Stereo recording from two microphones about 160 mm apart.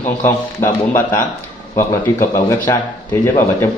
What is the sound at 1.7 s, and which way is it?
A man's voice, 15° left (ahead or behind).